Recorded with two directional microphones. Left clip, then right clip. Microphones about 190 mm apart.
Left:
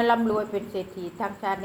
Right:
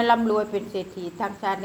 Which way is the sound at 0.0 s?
5° right (ahead or behind).